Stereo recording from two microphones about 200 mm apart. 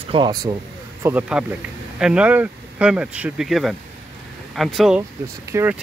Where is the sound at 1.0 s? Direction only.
10° right (ahead or behind).